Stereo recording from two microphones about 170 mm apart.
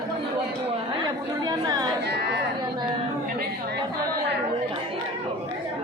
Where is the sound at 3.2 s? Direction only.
60° right (ahead or behind).